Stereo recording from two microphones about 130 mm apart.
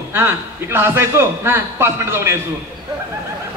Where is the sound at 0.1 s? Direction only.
20° right (ahead or behind).